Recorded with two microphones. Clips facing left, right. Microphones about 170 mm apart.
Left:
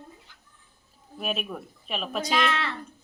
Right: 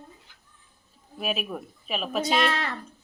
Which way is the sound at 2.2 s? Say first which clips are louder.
Right 1 dB; 35° right (ahead or behind).